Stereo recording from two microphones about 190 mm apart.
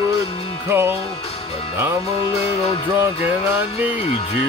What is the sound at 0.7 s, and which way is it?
Speech, 10° right (ahead or behind).